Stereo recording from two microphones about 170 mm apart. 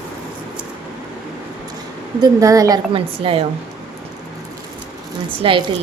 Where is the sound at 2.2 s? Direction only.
20° right (ahead or behind).